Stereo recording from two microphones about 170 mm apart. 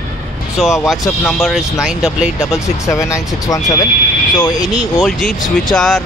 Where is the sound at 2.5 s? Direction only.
20° left (ahead or behind).